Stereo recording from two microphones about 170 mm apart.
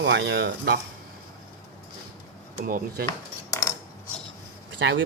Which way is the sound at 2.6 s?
60° right (ahead or behind).